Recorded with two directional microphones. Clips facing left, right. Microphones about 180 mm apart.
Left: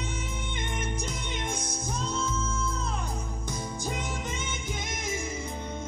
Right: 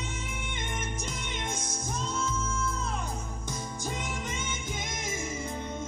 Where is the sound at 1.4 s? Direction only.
15° left (ahead or behind).